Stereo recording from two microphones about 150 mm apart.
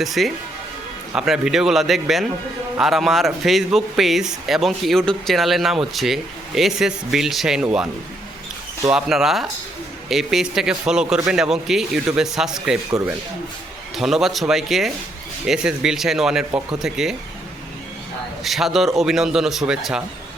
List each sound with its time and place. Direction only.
0.0 s speech: centre (ahead or behind)
8.9 s speech: 5° right (ahead or behind)
13.9 s speech: centre (ahead or behind)
18.4 s speech: centre (ahead or behind)